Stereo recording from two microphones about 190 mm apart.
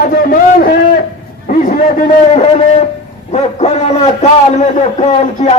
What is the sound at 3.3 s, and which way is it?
Speech, 35° left (ahead or behind).